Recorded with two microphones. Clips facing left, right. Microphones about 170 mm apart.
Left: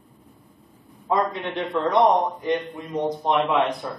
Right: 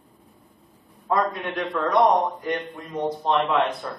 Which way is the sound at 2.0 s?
20° left (ahead or behind).